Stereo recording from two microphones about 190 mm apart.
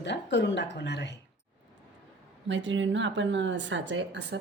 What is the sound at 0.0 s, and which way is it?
Speech, 65° left (ahead or behind).